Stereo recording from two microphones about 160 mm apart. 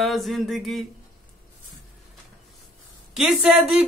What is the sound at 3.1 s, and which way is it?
Mantra, 5° right (ahead or behind).